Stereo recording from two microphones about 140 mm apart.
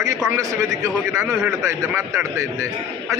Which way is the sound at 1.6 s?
20° right (ahead or behind).